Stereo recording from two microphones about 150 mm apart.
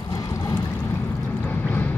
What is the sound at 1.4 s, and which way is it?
Vehicle, 15° left (ahead or behind).